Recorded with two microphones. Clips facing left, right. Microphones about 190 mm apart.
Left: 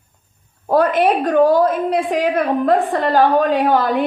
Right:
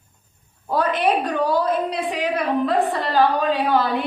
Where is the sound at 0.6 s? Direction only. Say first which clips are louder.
Left 6 dB; 50° left (ahead or behind).